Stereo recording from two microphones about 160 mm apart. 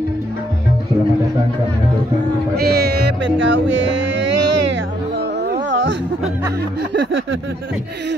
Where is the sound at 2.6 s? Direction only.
90° right.